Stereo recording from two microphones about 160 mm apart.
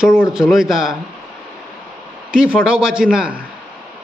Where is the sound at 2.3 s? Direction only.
5° right (ahead or behind).